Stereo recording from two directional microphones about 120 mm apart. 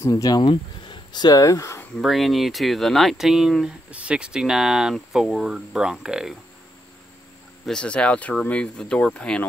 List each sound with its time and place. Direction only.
0.0 s speech: 30° left (ahead or behind)
2.0 s speech: centre (ahead or behind)
7.6 s speech: 10° left (ahead or behind)